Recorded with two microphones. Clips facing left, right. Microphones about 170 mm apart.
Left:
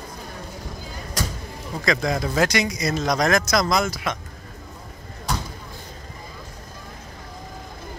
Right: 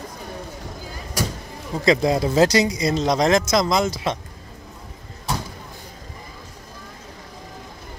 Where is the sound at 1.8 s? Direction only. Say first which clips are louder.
Right 5 dB; 25° right (ahead or behind).